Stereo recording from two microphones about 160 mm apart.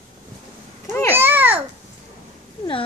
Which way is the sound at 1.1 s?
10° right (ahead or behind).